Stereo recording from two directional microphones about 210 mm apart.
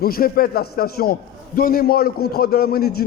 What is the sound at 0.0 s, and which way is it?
A man's voice, 45° left (ahead or behind).